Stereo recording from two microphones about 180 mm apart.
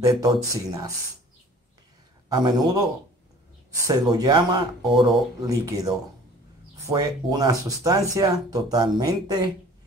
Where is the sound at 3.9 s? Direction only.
20° right (ahead or behind).